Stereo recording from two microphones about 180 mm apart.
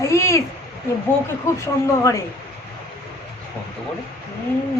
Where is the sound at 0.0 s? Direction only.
15° left (ahead or behind).